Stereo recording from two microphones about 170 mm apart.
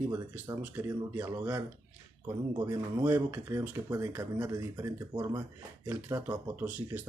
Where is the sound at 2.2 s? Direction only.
25° right (ahead or behind).